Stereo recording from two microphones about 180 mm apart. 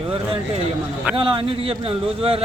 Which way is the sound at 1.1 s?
30° right (ahead or behind).